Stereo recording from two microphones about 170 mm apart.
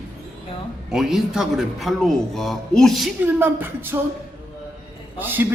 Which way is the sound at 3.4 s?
10° right (ahead or behind).